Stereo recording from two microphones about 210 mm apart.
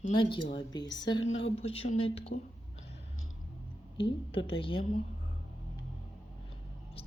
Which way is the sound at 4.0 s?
25° left (ahead or behind).